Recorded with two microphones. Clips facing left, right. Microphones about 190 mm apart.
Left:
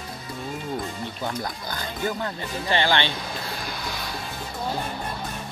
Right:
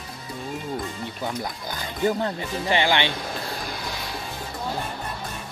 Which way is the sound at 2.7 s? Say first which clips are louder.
Right 1 dB; 15° right (ahead or behind).